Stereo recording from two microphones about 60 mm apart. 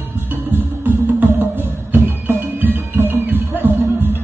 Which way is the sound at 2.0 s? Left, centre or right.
Right.